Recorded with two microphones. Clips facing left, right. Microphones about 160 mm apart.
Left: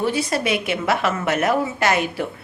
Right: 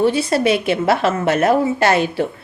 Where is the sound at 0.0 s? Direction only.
30° right (ahead or behind).